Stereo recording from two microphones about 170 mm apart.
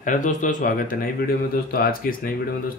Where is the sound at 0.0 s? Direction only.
50° left (ahead or behind).